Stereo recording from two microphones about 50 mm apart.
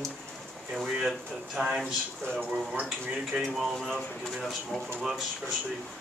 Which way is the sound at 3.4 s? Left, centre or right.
Centre.